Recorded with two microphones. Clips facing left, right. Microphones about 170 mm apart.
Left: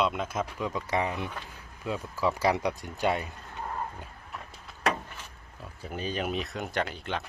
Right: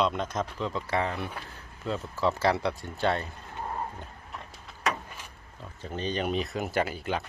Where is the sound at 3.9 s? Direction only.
Centre (ahead or behind).